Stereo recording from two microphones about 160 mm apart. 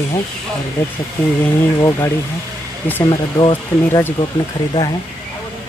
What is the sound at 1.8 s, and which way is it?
Speech, 20° left (ahead or behind).